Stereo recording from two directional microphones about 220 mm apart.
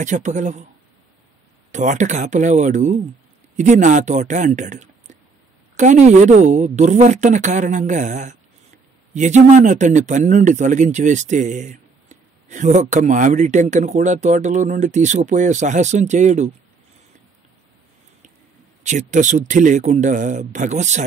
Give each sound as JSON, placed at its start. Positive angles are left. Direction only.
{"t": 0.0, "sound": "a man's voice", "side_deg": -35}
{"t": 1.7, "sound": "a man's voice", "side_deg": -35}
{"t": 18.8, "sound": "a man's voice", "side_deg": -35}